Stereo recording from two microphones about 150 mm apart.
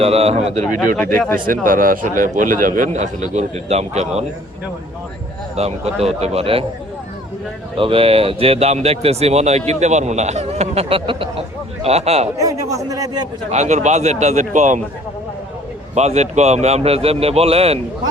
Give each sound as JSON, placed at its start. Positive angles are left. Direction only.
{"t": 0.0, "sound": "speech", "side_deg": -40}
{"t": 1.6, "sound": "a man's voice", "side_deg": -65}
{"t": 5.5, "sound": "speech", "side_deg": -45}
{"t": 7.8, "sound": "speech", "side_deg": -40}
{"t": 12.4, "sound": "speech", "side_deg": -20}
{"t": 13.5, "sound": "speech", "side_deg": -50}
{"t": 16.0, "sound": "speech", "side_deg": -45}